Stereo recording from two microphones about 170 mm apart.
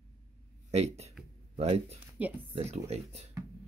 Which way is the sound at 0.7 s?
40° right (ahead or behind).